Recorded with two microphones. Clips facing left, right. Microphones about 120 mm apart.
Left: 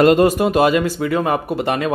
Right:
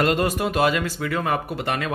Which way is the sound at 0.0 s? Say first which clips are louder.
Left 9 dB; 20° left (ahead or behind).